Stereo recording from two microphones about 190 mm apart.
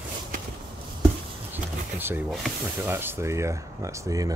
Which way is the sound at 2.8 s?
10° right (ahead or behind).